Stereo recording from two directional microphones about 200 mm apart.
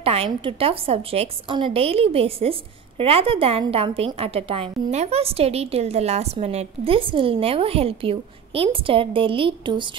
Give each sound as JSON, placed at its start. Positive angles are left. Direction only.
{"t": 0.0, "sound": "a woman's voice", "side_deg": -30}